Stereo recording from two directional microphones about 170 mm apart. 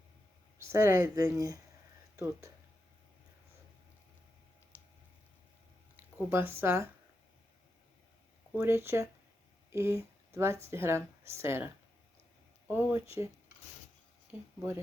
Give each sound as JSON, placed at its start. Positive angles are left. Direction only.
{"t": 0.7, "sound": "speech", "side_deg": -15}
{"t": 4.7, "sound": "clicking", "side_deg": 15}
{"t": 6.1, "sound": "speech", "side_deg": -15}
{"t": 8.5, "sound": "speech", "side_deg": -15}